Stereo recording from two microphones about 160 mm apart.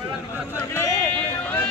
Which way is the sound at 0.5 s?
15° left (ahead or behind).